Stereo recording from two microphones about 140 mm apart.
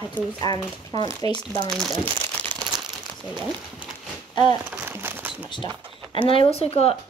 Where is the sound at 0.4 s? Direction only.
30° left (ahead or behind).